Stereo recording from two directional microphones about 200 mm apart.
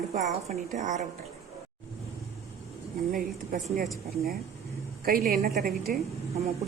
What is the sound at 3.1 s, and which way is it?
Speech, 45° right (ahead or behind).